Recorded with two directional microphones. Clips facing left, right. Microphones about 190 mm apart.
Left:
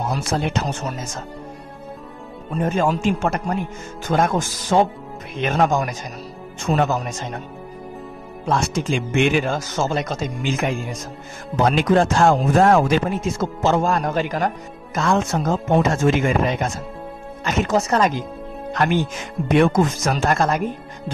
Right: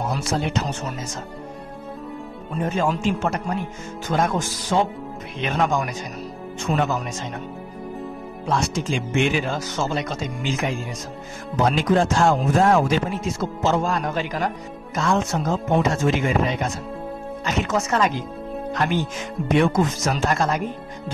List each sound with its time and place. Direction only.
0.1 s speech: 55° left (ahead or behind)
2.7 s speech: 50° left (ahead or behind)
8.5 s speech: 55° left (ahead or behind); by 18.1 s 35° left (ahead or behind)
18.7 s speech: 60° left (ahead or behind)